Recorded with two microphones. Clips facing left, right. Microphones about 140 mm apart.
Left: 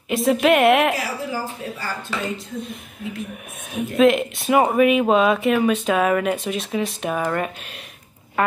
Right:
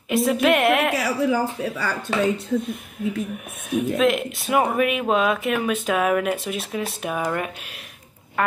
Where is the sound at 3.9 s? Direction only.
Centre (ahead or behind).